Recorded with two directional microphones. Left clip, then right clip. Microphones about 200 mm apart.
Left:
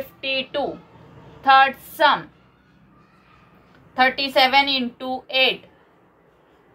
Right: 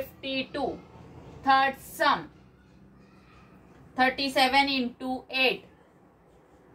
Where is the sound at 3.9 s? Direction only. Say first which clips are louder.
Left 7 dB; 40° left (ahead or behind).